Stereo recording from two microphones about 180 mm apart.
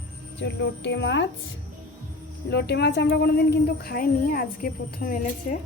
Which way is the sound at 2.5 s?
65° left (ahead or behind).